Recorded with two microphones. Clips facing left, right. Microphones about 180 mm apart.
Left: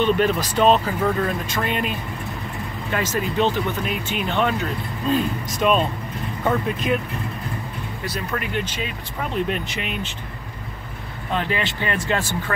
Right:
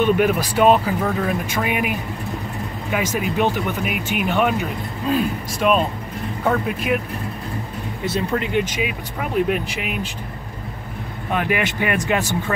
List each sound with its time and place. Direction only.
0.0 s speech: 10° right (ahead or behind)
8.0 s speech: 25° right (ahead or behind); by 10.0 s 5° right (ahead or behind)
11.3 s speech: 15° right (ahead or behind)